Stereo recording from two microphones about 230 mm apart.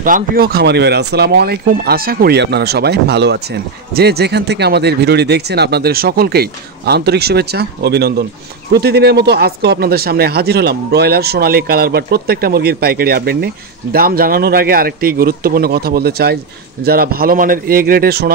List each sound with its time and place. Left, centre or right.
0.0 s speech: right